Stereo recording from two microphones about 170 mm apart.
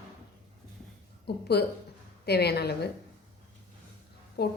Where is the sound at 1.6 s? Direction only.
70° left (ahead or behind).